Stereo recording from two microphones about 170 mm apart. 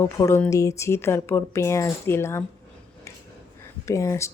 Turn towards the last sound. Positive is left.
turn(degrees=15)  # may be behind; listen again after turning